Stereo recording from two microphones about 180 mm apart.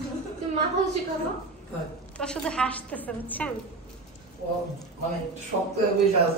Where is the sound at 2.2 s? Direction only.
5° left (ahead or behind).